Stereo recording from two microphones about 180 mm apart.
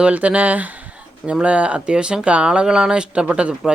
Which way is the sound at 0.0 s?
5° right (ahead or behind).